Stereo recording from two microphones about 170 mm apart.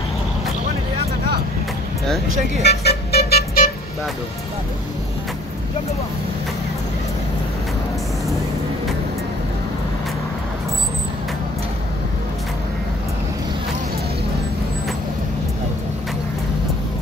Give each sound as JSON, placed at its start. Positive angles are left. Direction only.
{"t": 2.0, "sound": "speech", "side_deg": 0}
{"t": 2.6, "sound": "vehicle", "side_deg": 75}